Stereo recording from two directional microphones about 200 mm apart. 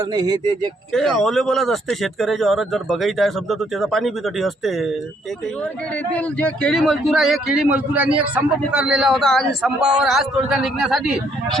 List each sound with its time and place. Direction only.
0.1 s speech: 20° right (ahead or behind)
0.9 s a man's voice: centre (ahead or behind)
6.1 s a man's voice: 5° left (ahead or behind)